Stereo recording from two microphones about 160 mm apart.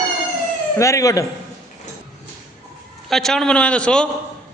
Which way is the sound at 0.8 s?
20° left (ahead or behind).